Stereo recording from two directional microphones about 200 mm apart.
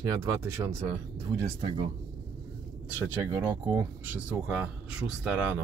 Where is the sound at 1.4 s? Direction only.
25° right (ahead or behind).